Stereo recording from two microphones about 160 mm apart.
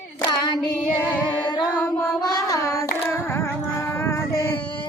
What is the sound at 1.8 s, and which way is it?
Child singing, 10° left (ahead or behind).